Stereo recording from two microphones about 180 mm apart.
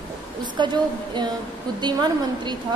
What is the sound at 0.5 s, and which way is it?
A woman's voice, 25° right (ahead or behind).